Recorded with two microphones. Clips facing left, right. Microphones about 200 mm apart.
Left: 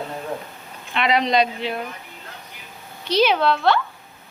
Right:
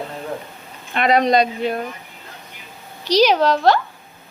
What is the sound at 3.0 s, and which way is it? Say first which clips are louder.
Speech: right 3 dB; 40° right (ahead or behind).